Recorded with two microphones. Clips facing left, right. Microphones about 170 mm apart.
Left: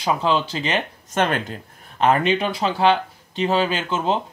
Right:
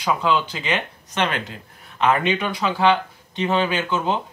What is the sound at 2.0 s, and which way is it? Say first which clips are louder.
Speech: left 2 dB; 35° left (ahead or behind).